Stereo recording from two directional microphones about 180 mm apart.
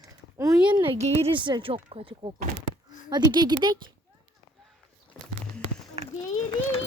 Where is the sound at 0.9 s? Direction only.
30° right (ahead or behind).